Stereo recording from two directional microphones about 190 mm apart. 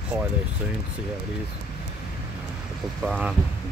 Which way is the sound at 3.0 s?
Centre (ahead or behind).